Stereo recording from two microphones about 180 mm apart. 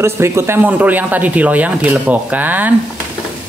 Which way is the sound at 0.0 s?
15° right (ahead or behind).